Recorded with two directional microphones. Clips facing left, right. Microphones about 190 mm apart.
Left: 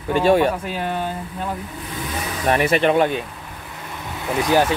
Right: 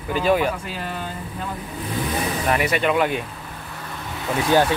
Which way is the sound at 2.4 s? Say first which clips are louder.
Left 5 dB; 35° left (ahead or behind).